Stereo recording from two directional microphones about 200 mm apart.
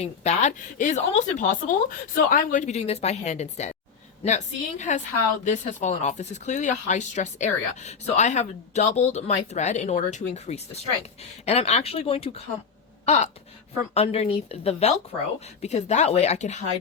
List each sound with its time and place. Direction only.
0.0 s speech: 35° left (ahead or behind)
13.1 s gasp: 35° left (ahead or behind)
13.9 s speech: 30° left (ahead or behind)